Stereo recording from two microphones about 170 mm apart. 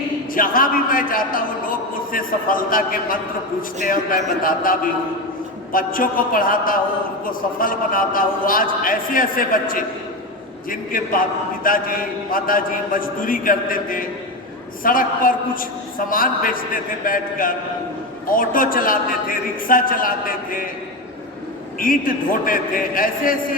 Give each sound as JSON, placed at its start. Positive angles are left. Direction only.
{"t": 0.3, "sound": "a man's voice", "side_deg": 55}
{"t": 21.8, "sound": "a man's voice", "side_deg": 55}